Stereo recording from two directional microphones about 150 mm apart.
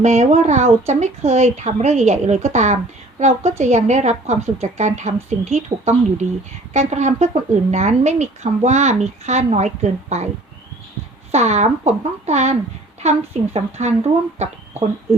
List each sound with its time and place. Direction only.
0.0 s speech: 50° right (ahead or behind)
11.3 s speech: 50° right (ahead or behind)